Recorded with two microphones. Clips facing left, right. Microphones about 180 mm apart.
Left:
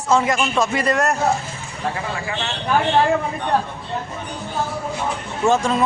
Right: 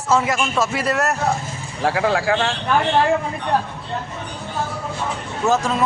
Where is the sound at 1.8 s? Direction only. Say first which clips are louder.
Right 7 dB; 80° right.